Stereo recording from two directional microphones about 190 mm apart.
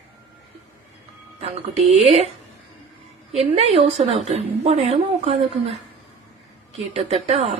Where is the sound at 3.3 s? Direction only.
30° right (ahead or behind).